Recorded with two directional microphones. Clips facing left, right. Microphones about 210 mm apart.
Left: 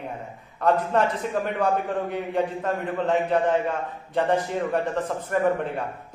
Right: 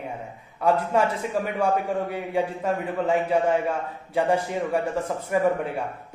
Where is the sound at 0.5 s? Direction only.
10° right (ahead or behind).